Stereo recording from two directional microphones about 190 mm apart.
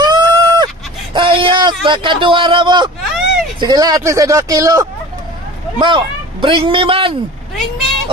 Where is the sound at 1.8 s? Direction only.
25° right (ahead or behind).